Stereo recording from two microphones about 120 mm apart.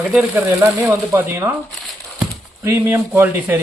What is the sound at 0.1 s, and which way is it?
Speech, 10° right (ahead or behind).